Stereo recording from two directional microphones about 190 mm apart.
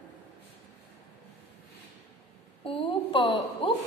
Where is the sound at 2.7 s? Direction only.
25° left (ahead or behind).